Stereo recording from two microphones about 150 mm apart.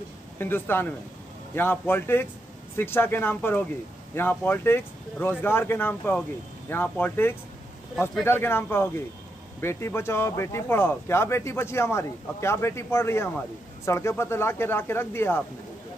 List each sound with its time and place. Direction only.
0.4 s speech: 15° left (ahead or behind)